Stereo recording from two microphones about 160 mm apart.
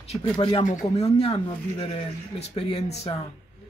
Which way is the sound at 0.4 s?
35° left (ahead or behind).